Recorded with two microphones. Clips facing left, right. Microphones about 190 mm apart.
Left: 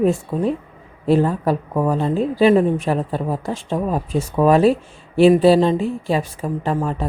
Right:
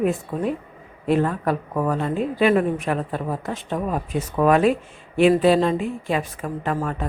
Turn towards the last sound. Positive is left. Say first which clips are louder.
# left 3 dB
turn(degrees=30)  # may be behind; listen again after turning